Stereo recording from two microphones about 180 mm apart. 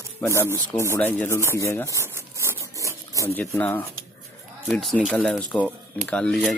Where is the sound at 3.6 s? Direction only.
10° left (ahead or behind).